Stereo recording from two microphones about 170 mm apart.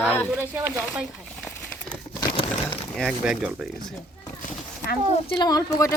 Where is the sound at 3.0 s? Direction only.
Centre (ahead or behind).